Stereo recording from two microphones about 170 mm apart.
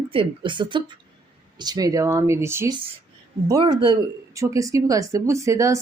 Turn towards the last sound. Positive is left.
turn(degrees=-20)  # may be behind; listen again after turning